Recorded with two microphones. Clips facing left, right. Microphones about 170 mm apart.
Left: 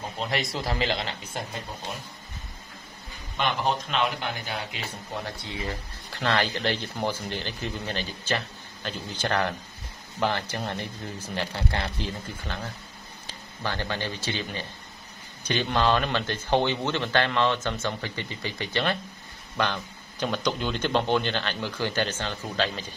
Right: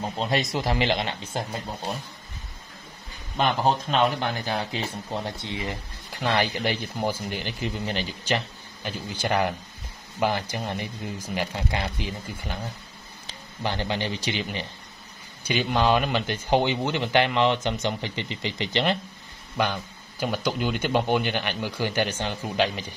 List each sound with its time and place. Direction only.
0.2 s a man's voice: 25° right (ahead or behind)
3.3 s speech: 40° right (ahead or behind); by 22.8 s 15° right (ahead or behind)